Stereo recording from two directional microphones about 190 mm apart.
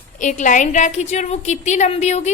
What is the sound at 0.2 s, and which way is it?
A woman's voice, 40° left (ahead or behind).